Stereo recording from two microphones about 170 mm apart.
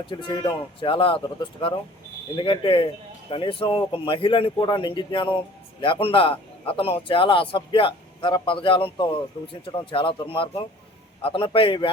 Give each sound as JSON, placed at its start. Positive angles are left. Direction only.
{"t": 0.0, "sound": "a man's voice", "side_deg": 30}